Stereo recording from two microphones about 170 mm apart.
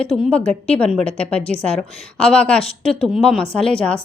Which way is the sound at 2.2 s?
5° left (ahead or behind).